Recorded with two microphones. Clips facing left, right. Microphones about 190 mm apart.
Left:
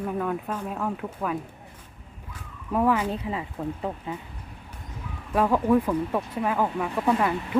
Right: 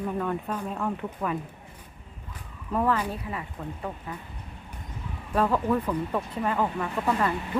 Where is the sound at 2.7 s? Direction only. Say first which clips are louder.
Left 3 dB; 10° left (ahead or behind).